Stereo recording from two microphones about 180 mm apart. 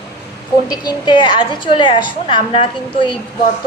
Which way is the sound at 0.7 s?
25° left (ahead or behind).